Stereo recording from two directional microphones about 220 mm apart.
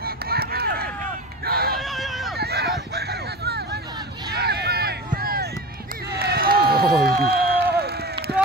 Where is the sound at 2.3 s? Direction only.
45° right (ahead or behind).